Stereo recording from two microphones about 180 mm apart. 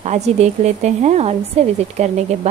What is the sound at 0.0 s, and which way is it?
Speech, 40° right (ahead or behind).